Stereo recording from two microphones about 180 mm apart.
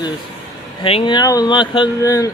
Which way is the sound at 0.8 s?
25° left (ahead or behind).